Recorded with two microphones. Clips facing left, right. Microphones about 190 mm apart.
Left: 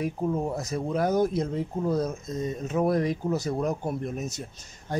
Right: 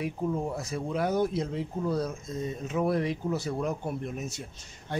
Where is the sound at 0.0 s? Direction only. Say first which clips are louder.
Left 3 dB; 45° left (ahead or behind).